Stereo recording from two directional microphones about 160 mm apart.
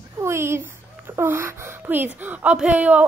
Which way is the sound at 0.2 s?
15° right (ahead or behind).